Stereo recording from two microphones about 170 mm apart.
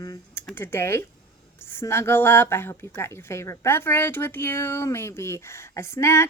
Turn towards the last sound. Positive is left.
turn(degrees=15)  # may be behind; listen again after turning